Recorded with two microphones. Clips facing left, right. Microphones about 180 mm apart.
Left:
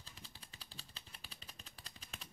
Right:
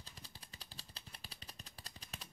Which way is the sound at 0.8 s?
40° right (ahead or behind).